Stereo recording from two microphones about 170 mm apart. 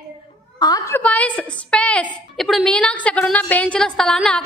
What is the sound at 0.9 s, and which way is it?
A woman's voice, 10° left (ahead or behind).